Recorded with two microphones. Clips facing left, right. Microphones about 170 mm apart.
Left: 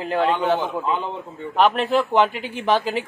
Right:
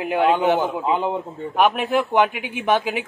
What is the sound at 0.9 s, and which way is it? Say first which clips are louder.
Speech: right 4 dB; 40° right (ahead or behind).